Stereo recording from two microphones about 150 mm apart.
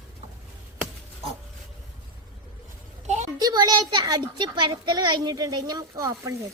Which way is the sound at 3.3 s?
25° right (ahead or behind).